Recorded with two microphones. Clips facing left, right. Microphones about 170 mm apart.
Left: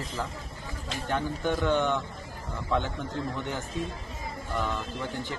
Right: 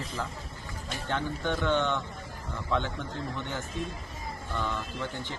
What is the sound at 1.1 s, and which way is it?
Speech, 15° left (ahead or behind).